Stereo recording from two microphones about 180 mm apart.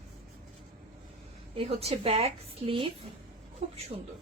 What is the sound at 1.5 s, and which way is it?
A woman's voice, 35° right (ahead or behind).